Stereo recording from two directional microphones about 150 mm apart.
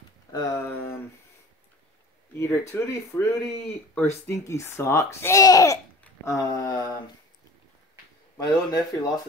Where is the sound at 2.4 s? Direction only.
20° left (ahead or behind).